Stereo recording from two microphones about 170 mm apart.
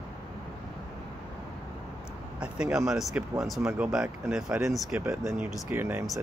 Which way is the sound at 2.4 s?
5° right (ahead or behind).